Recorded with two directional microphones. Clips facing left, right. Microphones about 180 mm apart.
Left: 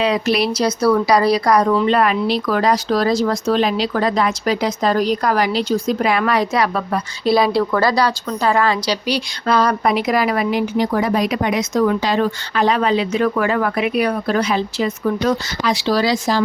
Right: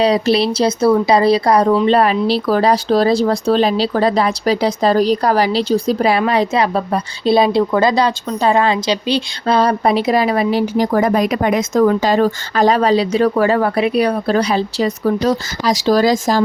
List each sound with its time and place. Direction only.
0.0 s a woman's voice: 30° right (ahead or behind)